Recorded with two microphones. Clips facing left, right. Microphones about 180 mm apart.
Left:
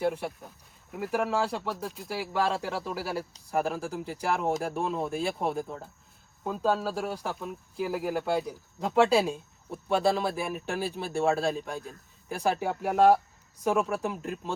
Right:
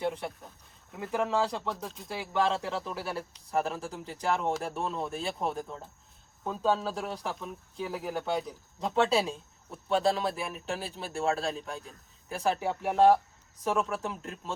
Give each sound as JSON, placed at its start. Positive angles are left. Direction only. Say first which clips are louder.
{"t": 0.0, "sound": "speech", "louder": "left 3 dB", "side_deg": 5}